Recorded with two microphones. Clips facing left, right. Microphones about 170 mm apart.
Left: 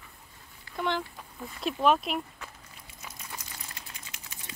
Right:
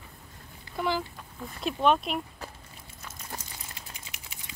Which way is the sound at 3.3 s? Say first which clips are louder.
Right 5 dB; 40° right (ahead or behind).